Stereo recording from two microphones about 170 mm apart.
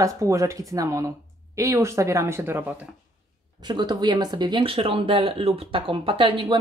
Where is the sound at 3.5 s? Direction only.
25° right (ahead or behind).